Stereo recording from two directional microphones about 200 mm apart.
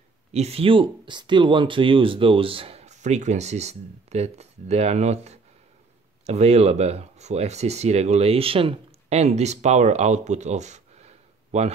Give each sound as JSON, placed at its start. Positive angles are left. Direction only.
{"t": 0.3, "sound": "speech", "side_deg": -30}